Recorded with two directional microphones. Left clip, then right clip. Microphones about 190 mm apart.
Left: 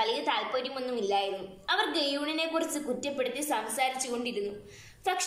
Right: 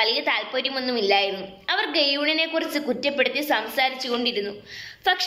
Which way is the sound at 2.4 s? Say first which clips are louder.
Right 6 dB; 20° right (ahead or behind).